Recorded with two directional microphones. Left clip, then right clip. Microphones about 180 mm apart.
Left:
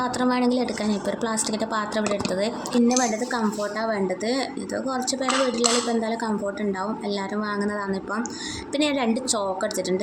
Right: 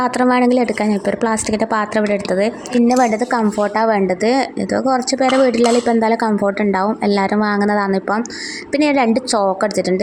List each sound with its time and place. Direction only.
0.0 s a woman's voice: 40° right (ahead or behind)